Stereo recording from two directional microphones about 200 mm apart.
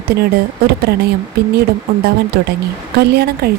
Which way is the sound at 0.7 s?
55° right (ahead or behind).